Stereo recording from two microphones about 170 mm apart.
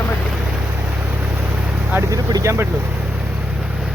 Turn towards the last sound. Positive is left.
turn(degrees=-15)  # may be behind; listen again after turning